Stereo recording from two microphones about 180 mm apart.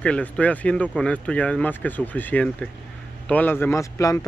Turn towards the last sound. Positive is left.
turn(degrees=15)  # may be behind; listen again after turning